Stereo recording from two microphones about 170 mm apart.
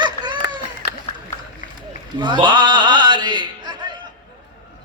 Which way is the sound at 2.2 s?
25° right (ahead or behind).